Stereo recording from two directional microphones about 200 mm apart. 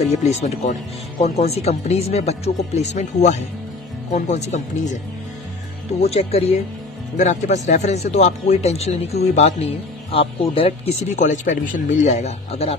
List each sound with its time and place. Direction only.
0.2 s speech: 35° left (ahead or behind)
6.0 s speech: 30° left (ahead or behind)